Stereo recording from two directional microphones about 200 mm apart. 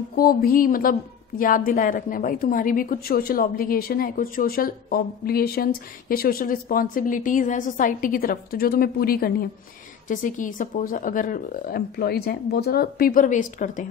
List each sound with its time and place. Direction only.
0.1 s a woman's voice: 45° left (ahead or behind)